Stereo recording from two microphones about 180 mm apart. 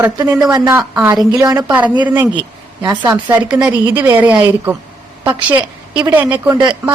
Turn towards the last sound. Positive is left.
turn(degrees=-25)  # may be behind; listen again after turning